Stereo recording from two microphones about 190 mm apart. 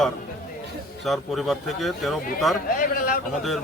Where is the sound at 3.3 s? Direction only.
Centre (ahead or behind).